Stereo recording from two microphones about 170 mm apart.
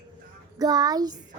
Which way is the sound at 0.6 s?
20° right (ahead or behind).